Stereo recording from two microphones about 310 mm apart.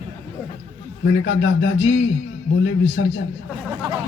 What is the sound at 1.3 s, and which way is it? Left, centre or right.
Speech, left.